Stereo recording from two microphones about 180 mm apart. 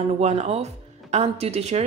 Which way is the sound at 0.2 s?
35° right (ahead or behind).